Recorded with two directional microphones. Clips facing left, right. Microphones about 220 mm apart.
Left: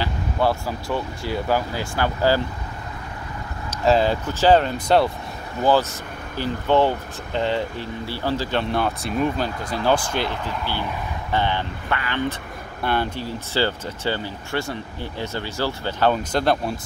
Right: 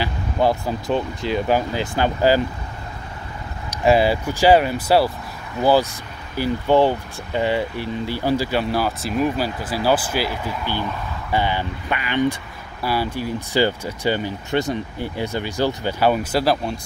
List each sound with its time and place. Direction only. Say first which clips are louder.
0.0 s speech: right 2 dB; 15° right (ahead or behind)
3.7 s speech: right 2 dB; 10° right (ahead or behind)